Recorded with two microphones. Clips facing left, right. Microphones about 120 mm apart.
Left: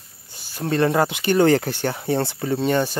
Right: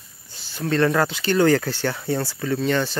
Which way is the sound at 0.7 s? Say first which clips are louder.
Left 1 dB; 20° left (ahead or behind).